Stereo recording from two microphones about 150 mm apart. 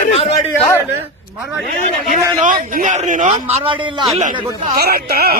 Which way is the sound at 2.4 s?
60° right (ahead or behind).